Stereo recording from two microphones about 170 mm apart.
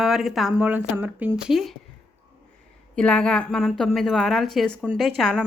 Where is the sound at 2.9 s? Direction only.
5° left (ahead or behind).